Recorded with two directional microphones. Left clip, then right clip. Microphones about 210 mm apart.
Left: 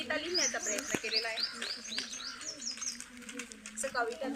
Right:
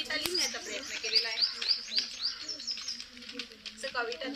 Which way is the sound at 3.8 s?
5° right (ahead or behind).